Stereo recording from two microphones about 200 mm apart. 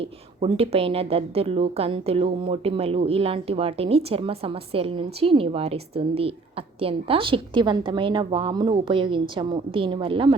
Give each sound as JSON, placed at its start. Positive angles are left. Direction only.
{"t": 0.0, "sound": "a woman's voice", "side_deg": -30}